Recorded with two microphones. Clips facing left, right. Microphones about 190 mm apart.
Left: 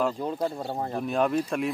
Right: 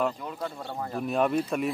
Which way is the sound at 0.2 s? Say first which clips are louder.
Left 6 dB; 35° left (ahead or behind).